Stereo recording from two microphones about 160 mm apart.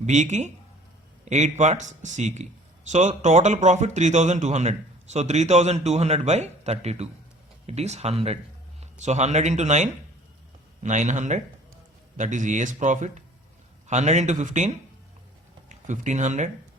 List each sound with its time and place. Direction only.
0.0 s a man's voice: 45° right (ahead or behind)